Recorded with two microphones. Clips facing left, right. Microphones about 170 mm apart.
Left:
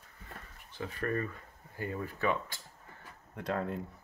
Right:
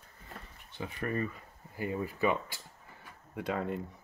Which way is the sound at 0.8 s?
20° right (ahead or behind).